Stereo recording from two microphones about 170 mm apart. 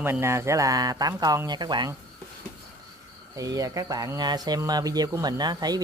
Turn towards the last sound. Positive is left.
turn(degrees=-25)  # may be behind; listen again after turning